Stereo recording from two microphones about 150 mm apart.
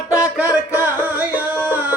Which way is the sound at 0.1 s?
10° right (ahead or behind).